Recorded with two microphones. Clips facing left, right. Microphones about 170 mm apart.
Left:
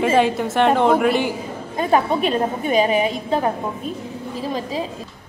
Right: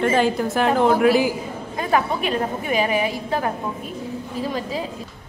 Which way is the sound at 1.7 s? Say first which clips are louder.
Left 3 dB; 25° left (ahead or behind).